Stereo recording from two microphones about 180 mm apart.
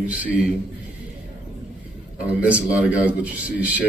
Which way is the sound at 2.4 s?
5° right (ahead or behind).